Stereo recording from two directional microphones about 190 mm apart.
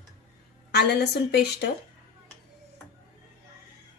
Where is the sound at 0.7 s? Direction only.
60° left (ahead or behind).